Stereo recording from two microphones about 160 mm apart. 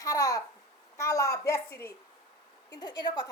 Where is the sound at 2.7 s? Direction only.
25° left (ahead or behind).